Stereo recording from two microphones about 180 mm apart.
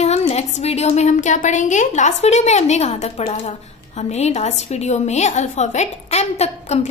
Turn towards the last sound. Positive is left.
turn(degrees=35)  # may be behind; listen again after turning